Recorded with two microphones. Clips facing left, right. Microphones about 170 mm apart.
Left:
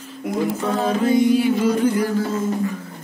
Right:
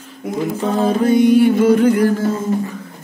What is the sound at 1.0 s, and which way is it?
Music, 60° right (ahead or behind).